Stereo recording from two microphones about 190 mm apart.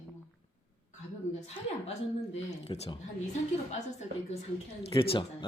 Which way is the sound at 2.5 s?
30° left (ahead or behind).